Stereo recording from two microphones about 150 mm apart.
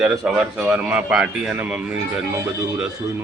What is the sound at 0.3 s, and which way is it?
Speech, 5° right (ahead or behind).